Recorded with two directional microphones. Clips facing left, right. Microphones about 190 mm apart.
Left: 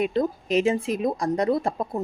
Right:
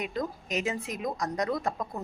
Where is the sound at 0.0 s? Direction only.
30° left (ahead or behind).